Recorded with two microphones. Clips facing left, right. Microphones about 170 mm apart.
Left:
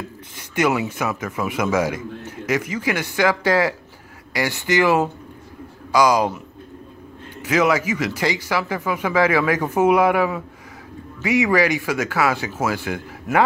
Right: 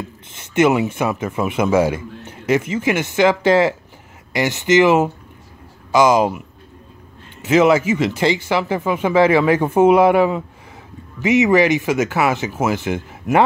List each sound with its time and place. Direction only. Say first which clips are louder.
0.3 s speech: right 5 dB; 25° right (ahead or behind)
7.4 s speech: right 5 dB; 25° right (ahead or behind)